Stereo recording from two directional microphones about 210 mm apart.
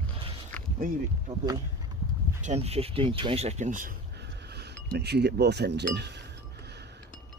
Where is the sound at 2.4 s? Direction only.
30° right (ahead or behind).